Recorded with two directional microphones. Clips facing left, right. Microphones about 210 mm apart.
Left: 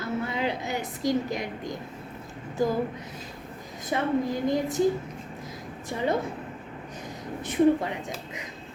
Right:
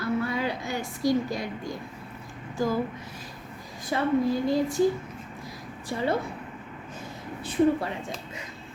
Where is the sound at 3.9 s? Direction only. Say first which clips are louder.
Right 2 dB; 20° left (ahead or behind).